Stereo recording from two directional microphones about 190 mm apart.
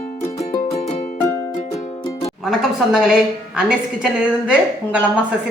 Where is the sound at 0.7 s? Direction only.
35° left (ahead or behind).